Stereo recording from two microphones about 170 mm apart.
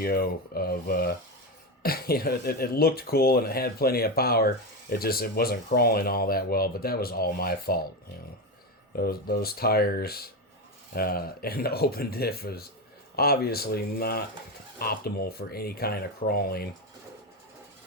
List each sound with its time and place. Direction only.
0.0 s speech: 65° left (ahead or behind)
9.0 s speech: 65° left (ahead or behind)